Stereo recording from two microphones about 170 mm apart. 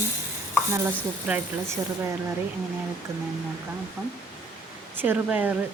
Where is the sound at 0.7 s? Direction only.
10° right (ahead or behind).